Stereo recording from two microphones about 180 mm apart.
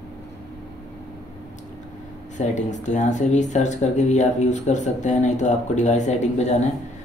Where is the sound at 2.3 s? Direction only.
40° left (ahead or behind).